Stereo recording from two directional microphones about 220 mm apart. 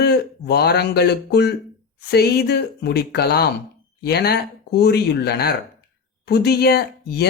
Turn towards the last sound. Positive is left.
turn(degrees=45)  # may be behind; listen again after turning